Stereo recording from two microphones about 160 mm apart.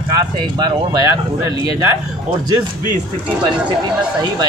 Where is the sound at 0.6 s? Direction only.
20° right (ahead or behind).